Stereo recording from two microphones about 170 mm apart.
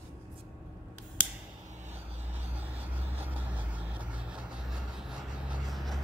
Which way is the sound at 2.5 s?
10° right (ahead or behind).